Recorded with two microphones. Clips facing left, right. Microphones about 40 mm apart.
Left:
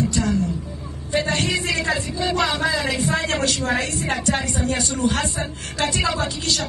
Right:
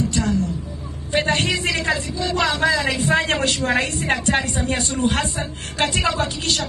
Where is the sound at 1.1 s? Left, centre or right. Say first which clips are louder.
Right 2 dB; right.